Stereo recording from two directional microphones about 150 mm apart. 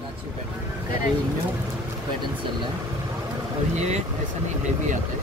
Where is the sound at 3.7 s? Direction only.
50° right (ahead or behind).